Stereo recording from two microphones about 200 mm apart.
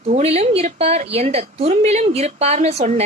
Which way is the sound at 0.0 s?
30° right (ahead or behind).